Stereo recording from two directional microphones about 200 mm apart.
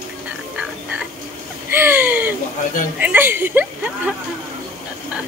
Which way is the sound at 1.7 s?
10° right (ahead or behind).